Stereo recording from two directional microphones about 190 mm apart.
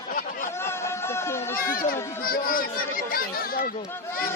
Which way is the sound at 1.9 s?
50° left (ahead or behind).